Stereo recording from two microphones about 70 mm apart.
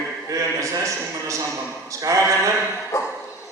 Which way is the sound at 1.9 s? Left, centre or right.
Right.